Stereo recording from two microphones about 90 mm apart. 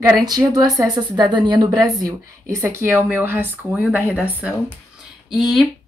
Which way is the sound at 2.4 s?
30° right (ahead or behind).